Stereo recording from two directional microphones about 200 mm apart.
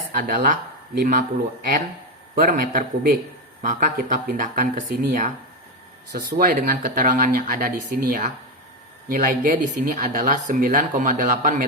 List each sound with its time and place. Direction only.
0.2 s speech: 45° right (ahead or behind)
2.3 s speech: 40° right (ahead or behind)